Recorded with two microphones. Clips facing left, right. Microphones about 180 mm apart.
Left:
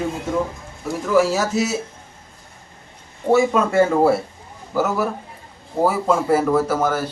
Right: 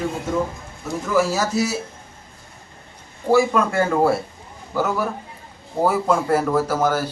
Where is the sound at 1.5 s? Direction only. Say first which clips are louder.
Left 1 dB; 20° left (ahead or behind).